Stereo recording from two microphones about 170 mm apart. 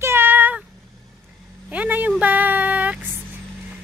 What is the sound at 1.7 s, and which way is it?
Speech, 10° right (ahead or behind).